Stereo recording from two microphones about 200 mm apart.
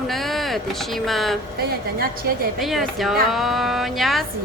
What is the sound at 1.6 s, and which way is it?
Speech, 50° right (ahead or behind).